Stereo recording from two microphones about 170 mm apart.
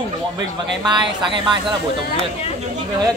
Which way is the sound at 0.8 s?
25° right (ahead or behind).